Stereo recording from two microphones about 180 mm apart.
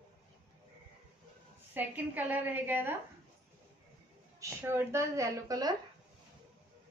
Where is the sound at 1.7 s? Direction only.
10° right (ahead or behind).